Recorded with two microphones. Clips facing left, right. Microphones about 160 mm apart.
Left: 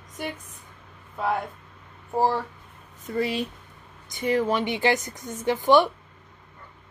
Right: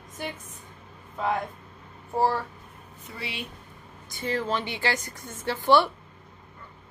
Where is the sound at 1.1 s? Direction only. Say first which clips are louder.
Left 1 dB; 5° left (ahead or behind).